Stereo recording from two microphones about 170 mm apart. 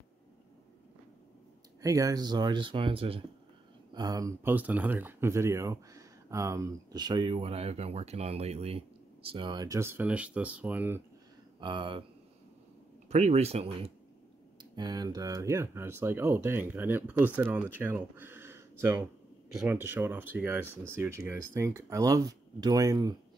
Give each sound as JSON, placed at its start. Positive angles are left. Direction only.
{"t": 1.8, "sound": "speech", "side_deg": -20}
{"t": 11.6, "sound": "speech", "side_deg": -30}
{"t": 13.1, "sound": "speech", "side_deg": -40}
{"t": 14.6, "sound": "speech", "side_deg": -25}